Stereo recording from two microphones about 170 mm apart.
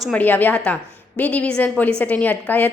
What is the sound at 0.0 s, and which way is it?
A woman's voice, 10° left (ahead or behind).